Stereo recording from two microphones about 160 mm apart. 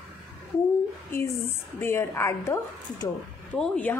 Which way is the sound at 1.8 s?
15° left (ahead or behind).